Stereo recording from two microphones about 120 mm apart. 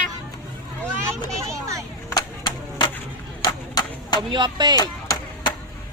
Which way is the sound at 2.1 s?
40° left (ahead or behind).